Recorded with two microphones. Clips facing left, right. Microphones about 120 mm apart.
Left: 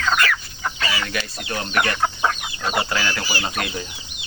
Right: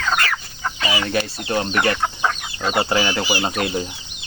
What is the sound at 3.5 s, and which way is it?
Speech, 30° right (ahead or behind).